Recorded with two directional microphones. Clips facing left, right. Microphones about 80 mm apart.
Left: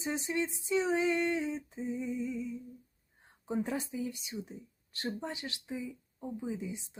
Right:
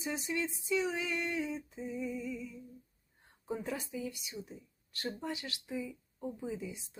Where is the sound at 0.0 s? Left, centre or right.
Left.